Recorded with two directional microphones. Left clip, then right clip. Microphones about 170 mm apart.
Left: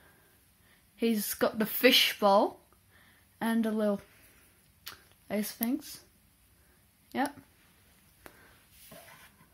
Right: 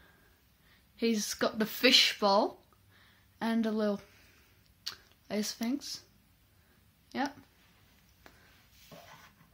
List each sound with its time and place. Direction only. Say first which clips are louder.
0.9 s speech: left 1 dB; 25° left (ahead or behind)
7.1 s speech: left 3 dB; 25° left (ahead or behind)
8.2 s a sound: left 5 dB; 70° left (ahead or behind)